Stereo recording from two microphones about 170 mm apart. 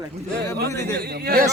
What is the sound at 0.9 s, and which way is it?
Speech, 70° right (ahead or behind).